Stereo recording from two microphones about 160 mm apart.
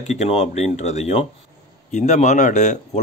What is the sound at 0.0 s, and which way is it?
A man's voice, 45° left (ahead or behind).